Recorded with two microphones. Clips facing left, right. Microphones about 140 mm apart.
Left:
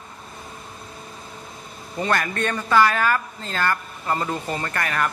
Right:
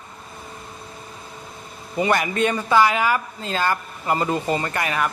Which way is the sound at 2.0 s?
10° right (ahead or behind).